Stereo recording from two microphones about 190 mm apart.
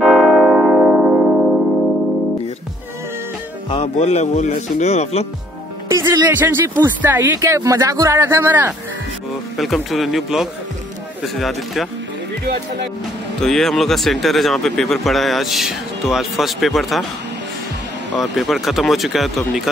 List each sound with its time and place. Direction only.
0.0 s church bell: centre (ahead or behind)
3.7 s a man's voice: 35° left (ahead or behind)
5.9 s speech: 15° right (ahead or behind)
9.6 s speech: centre (ahead or behind)
13.4 s speech: centre (ahead or behind)
18.3 s speech: centre (ahead or behind)